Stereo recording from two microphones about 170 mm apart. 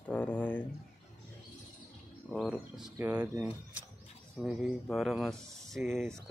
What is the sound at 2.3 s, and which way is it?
Speech, centre (ahead or behind).